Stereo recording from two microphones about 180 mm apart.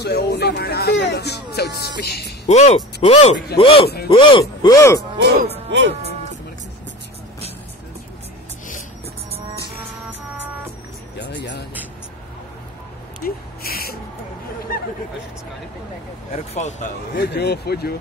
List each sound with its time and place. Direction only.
0.0 s speech: 65° left (ahead or behind)
2.4 s speech: 40° left (ahead or behind); by 5.0 s 20° left (ahead or behind)
5.7 s speech: 80° right
11.1 s music: 75° left (ahead or behind)
13.2 s a sound: 55° left (ahead or behind)
16.3 s speech: 40° left (ahead or behind)
17.1 s speech: 60° left (ahead or behind)